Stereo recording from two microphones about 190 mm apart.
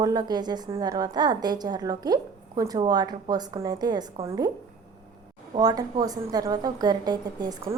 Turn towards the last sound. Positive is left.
turn(degrees=-20)  # may be behind; listen again after turning